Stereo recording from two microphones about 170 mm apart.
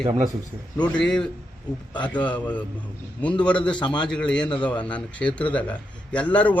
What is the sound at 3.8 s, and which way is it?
Speech, 25° left (ahead or behind).